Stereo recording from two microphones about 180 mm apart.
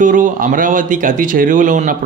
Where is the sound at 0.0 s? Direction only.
45° right (ahead or behind).